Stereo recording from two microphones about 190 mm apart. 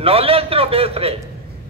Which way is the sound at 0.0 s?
30° right (ahead or behind).